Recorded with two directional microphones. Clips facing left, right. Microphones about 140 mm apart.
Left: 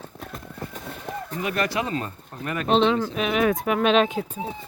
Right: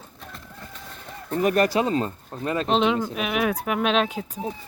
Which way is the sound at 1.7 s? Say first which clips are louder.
Right 4 dB; 30° right (ahead or behind).